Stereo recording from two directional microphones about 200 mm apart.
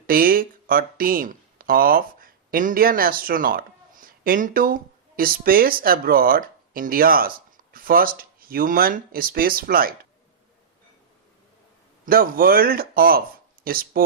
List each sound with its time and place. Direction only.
0.1 s speech: 45° right (ahead or behind)
12.0 s speech: 45° right (ahead or behind)